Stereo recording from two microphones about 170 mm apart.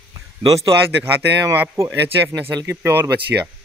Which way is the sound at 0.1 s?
20° right (ahead or behind).